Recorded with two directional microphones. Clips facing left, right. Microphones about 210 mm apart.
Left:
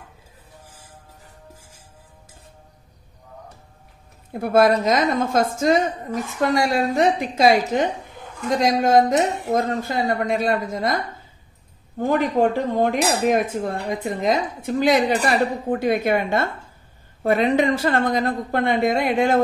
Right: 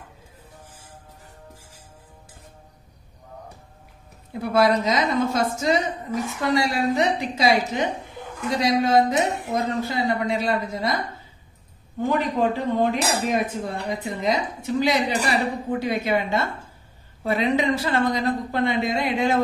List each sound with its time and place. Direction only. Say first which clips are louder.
4.3 s dishes: left 3 dB; 50° left (ahead or behind)
12.0 s dishes: left 3 dB; 45° left (ahead or behind)